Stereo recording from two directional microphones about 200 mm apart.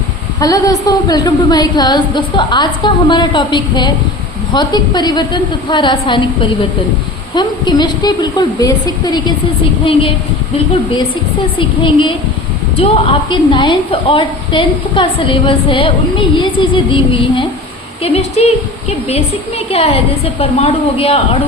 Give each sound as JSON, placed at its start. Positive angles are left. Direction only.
{"t": 0.3, "sound": "a woman's voice", "side_deg": 20}
{"t": 11.8, "sound": "a woman's voice", "side_deg": 25}